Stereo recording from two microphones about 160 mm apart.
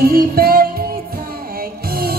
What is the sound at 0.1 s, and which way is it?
Music, 70° right (ahead or behind).